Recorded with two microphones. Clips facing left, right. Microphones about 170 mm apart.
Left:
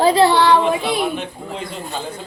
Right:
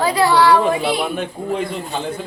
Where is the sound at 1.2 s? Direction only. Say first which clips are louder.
Right 6 dB; 55° right (ahead or behind).